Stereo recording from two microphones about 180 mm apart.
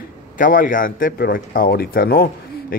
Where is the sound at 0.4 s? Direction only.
50° left (ahead or behind).